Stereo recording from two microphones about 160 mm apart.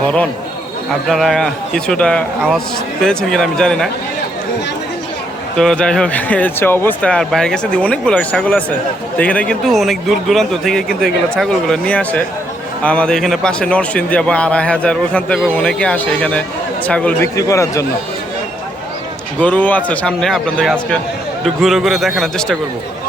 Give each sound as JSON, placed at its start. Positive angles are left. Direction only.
{"t": 1.0, "sound": "a man's voice", "side_deg": 0}
{"t": 5.5, "sound": "a man's voice", "side_deg": 5}
{"t": 17.3, "sound": "speech", "side_deg": 20}
{"t": 19.4, "sound": "a man's voice", "side_deg": 10}